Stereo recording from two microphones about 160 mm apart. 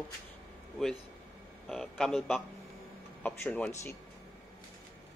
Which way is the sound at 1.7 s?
Centre (ahead or behind).